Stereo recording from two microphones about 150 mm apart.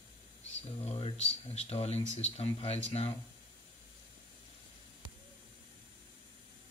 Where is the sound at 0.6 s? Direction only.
45° left (ahead or behind).